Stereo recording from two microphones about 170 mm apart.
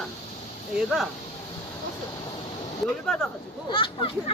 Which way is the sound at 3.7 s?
30° left (ahead or behind).